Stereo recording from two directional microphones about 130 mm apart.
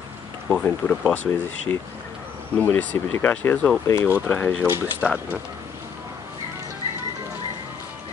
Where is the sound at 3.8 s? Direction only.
25° left (ahead or behind).